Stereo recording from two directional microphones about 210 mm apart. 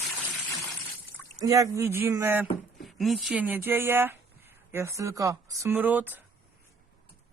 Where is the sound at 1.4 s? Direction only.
15° right (ahead or behind).